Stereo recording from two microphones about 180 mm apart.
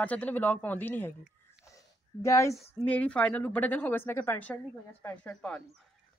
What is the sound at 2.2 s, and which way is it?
A woman's voice, 15° left (ahead or behind).